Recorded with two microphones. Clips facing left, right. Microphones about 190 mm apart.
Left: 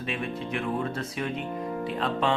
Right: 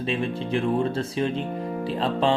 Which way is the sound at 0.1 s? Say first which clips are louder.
Right 5 dB; 30° right (ahead or behind).